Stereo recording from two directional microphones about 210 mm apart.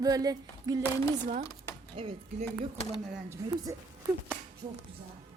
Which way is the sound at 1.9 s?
30° right (ahead or behind).